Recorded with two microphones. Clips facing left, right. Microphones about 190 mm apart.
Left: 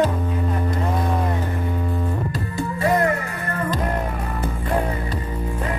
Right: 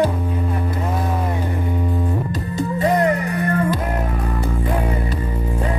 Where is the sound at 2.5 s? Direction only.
20° right (ahead or behind).